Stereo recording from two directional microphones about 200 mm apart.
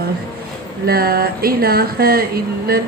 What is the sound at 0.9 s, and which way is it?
Speech, 50° right (ahead or behind).